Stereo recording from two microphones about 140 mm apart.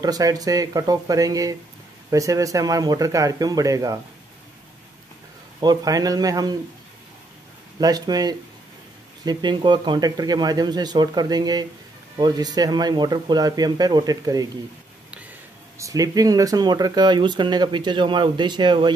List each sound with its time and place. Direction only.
0.0 s speech: 25° right (ahead or behind)
5.6 s speech: 30° right (ahead or behind)
7.8 s speech: 25° right (ahead or behind)
15.8 s speech: 25° right (ahead or behind)